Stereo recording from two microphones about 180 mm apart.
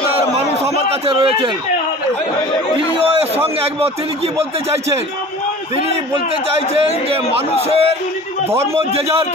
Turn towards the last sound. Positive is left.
turn(degrees=-35)  # may be behind; listen again after turning